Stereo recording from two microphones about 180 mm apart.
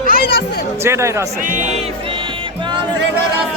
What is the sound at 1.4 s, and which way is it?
Speech, 40° right (ahead or behind).